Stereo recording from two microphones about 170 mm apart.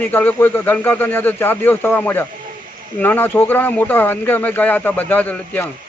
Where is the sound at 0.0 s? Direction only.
10° left (ahead or behind).